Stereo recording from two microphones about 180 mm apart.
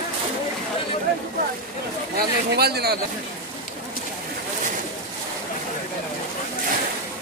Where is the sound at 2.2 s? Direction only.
60° right (ahead or behind).